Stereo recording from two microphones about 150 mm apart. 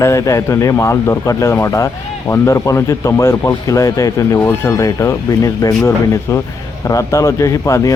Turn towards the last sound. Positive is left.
turn(degrees=20)  # may be behind; listen again after turning